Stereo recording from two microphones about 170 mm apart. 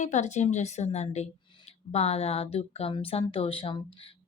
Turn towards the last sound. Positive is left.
turn(degrees=30)  # may be behind; listen again after turning